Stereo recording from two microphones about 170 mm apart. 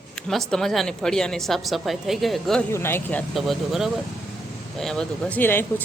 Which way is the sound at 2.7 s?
15° left (ahead or behind).